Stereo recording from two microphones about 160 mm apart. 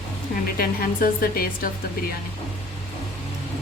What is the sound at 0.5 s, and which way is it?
Speech, 65° left (ahead or behind).